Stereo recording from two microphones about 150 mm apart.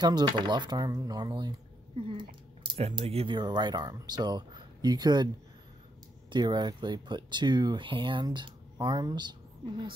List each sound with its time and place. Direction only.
0.0 s speech: 30° right (ahead or behind)
2.0 s a sound: 35° right (ahead or behind)
2.6 s speech: 35° right (ahead or behind)
6.3 s speech: 30° right (ahead or behind)